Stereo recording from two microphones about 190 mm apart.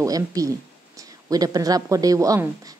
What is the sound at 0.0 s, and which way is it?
A woman's voice, 20° right (ahead or behind).